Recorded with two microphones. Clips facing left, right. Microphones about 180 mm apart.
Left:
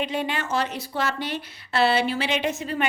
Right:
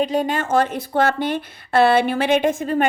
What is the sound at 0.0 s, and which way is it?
Speech, 40° right (ahead or behind).